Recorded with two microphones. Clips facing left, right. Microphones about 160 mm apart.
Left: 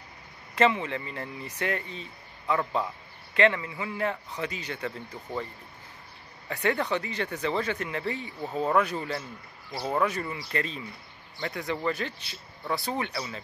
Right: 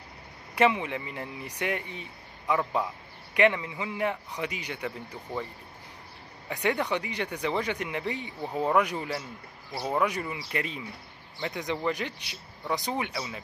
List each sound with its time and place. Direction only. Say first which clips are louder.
0.6 s speech: even; 15° right (ahead or behind)
6.5 s speech: left 1 dB; 15° right (ahead or behind)